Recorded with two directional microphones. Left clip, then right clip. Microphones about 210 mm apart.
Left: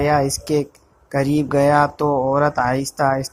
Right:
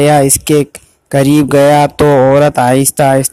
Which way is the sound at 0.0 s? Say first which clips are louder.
Right 9 dB; 45° right (ahead or behind).